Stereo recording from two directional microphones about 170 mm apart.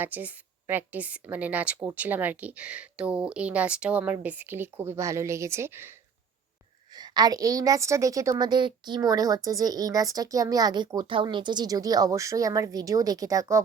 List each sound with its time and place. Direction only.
0.0 s a woman's voice: 10° right (ahead or behind)
6.9 s a woman's voice: 25° right (ahead or behind)